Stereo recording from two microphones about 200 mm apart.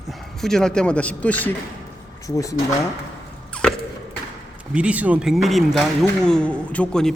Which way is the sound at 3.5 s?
5° left (ahead or behind).